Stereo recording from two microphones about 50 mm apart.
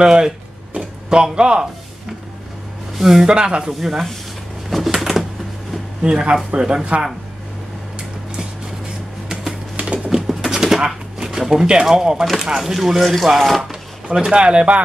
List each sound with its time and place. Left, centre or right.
0.0 s speech: centre
3.0 s speech: centre
3.3 s speech: centre
3.8 s speech: centre
4.6 s a sound: centre
6.0 s speech: centre
9.3 s typing: centre
10.9 s a sound: centre
11.8 s speech: centre
14.3 s speech: right